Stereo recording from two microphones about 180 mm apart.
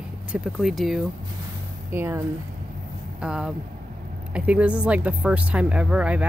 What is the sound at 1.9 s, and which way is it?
Speech, 15° right (ahead or behind).